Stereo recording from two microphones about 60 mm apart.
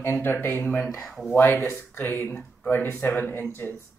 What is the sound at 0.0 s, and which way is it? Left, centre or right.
Speech, left.